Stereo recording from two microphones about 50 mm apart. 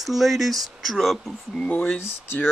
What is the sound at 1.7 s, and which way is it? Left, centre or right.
Speech, left.